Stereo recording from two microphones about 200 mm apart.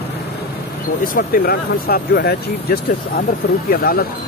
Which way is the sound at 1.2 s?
50° left (ahead or behind).